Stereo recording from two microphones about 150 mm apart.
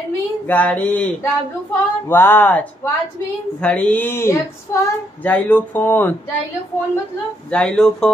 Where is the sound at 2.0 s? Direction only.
15° left (ahead or behind).